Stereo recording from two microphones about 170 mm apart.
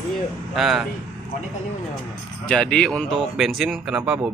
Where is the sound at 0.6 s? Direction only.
Centre (ahead or behind).